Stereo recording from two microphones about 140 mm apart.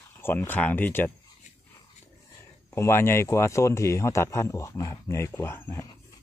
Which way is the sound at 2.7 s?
20° left (ahead or behind).